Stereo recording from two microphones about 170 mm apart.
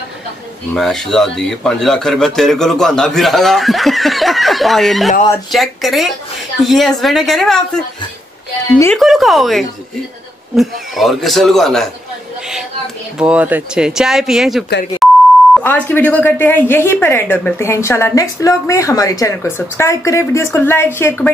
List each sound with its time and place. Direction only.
0.7 s a man's voice: centre (ahead or behind)
8.9 s a man's voice: centre (ahead or behind)
13.2 s a man's voice: 10° right (ahead or behind)
15.0 s beep: centre (ahead or behind)
15.6 s a woman's voice: 10° left (ahead or behind)